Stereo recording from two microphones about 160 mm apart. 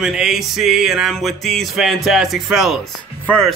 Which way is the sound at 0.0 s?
5° right (ahead or behind).